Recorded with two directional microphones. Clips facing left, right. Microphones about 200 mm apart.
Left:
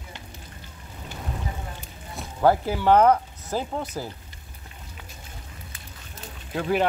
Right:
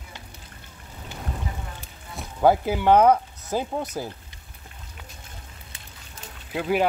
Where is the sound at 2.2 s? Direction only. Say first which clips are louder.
Right 1 dB; 10° right (ahead or behind).